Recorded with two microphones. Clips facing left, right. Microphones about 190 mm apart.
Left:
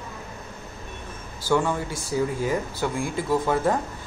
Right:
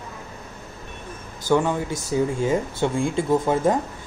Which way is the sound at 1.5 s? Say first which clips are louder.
Right 3 dB; 20° right (ahead or behind).